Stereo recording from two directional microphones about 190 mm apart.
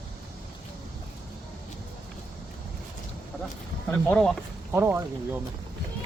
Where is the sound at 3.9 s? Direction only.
5° left (ahead or behind).